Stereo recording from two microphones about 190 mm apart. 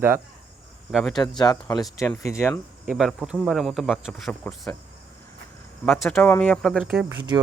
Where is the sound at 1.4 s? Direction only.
20° left (ahead or behind).